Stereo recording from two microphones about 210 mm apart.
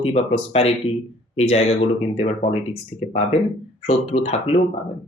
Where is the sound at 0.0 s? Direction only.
30° left (ahead or behind).